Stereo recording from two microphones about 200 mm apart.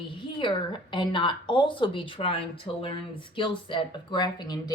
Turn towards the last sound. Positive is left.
turn(degrees=20)  # may be behind; listen again after turning